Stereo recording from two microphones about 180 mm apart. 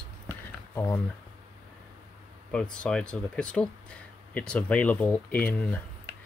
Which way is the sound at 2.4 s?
5° left (ahead or behind).